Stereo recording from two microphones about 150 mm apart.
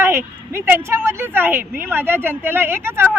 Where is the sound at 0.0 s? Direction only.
15° right (ahead or behind).